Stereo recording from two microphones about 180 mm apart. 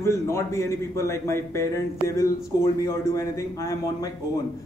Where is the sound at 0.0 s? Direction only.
15° left (ahead or behind).